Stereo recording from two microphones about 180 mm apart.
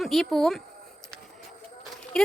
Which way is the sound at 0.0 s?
Centre (ahead or behind).